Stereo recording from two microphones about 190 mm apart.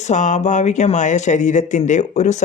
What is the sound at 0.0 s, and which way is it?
Speech, 40° left (ahead or behind).